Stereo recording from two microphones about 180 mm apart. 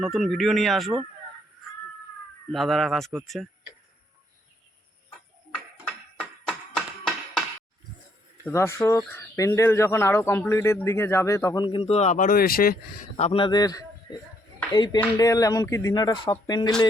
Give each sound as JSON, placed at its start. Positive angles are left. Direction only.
{"t": 0.0, "sound": "speech", "side_deg": 0}
{"t": 2.5, "sound": "speech", "side_deg": 0}
{"t": 6.1, "sound": "music", "side_deg": 0}
{"t": 8.4, "sound": "speech", "side_deg": 15}
{"t": 11.6, "sound": "speech", "side_deg": 30}
{"t": 13.1, "sound": "speech", "side_deg": 35}